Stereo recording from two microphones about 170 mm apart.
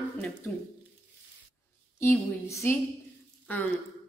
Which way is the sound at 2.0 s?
15° left (ahead or behind).